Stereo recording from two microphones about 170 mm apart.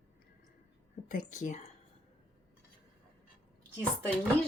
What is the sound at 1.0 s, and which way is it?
Speech, 50° left (ahead or behind).